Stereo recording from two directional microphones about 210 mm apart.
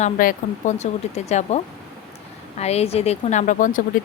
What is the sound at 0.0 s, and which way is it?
Speech, 40° left (ahead or behind).